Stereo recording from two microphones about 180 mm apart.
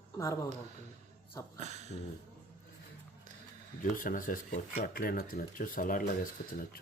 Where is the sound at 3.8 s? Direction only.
50° left (ahead or behind).